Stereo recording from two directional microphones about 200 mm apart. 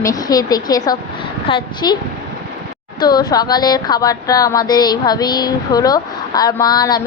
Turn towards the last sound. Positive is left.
turn(degrees=20)  # may be behind; listen again after turning